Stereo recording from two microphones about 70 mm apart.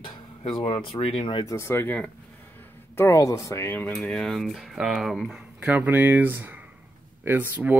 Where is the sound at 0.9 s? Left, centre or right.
Left.